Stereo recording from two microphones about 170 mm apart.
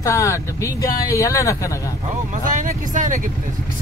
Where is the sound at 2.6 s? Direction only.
50° right (ahead or behind).